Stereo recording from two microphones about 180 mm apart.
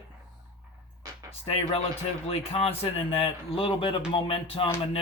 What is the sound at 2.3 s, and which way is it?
Speech, 35° left (ahead or behind).